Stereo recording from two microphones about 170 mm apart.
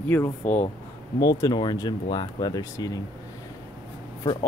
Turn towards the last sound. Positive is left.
turn(degrees=30)  # may be behind; listen again after turning